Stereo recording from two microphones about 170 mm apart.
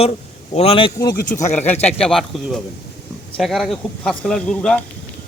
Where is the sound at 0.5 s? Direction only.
35° left (ahead or behind).